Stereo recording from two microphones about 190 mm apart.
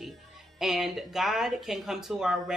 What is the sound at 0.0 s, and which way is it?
A woman's voice, centre (ahead or behind).